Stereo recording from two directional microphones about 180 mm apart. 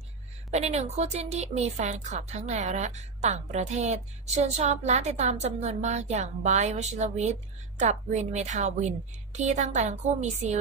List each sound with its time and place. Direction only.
0.5 s speech: 40° right (ahead or behind)